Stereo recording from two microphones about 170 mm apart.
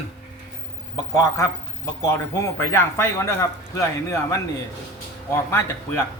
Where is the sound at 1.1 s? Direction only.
20° left (ahead or behind).